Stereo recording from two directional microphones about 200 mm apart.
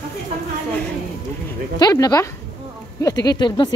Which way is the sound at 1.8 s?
20° left (ahead or behind).